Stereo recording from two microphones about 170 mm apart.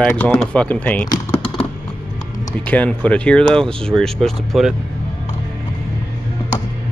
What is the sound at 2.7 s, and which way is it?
Speech, 10° left (ahead or behind).